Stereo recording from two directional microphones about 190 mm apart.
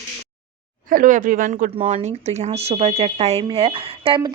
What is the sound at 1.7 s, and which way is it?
A woman's voice, 35° right (ahead or behind).